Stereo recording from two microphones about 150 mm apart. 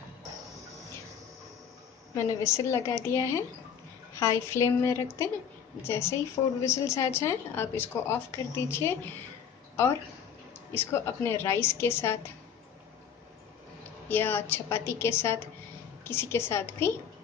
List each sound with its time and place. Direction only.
2.1 s a woman's voice: 20° left (ahead or behind)
10.7 s speech: 15° left (ahead or behind)
14.0 s speech: 15° left (ahead or behind)